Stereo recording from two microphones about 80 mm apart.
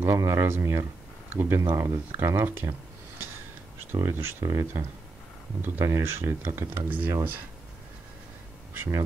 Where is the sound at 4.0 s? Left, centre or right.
Right.